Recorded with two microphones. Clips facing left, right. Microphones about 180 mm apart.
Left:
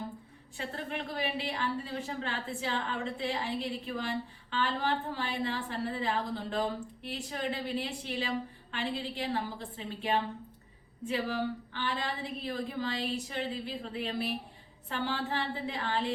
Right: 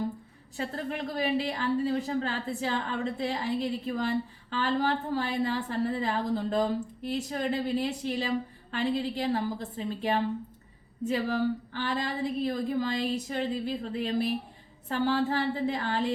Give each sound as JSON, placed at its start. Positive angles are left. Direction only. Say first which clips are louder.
{"t": 0.5, "sound": "a woman's voice", "louder": "right 4 dB", "side_deg": -40}